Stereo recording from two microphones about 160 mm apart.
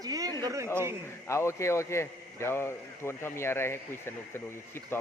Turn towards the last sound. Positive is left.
turn(degrees=15)  # may be behind; listen again after turning